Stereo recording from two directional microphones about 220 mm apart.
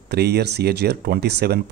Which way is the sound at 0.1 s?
45° right (ahead or behind).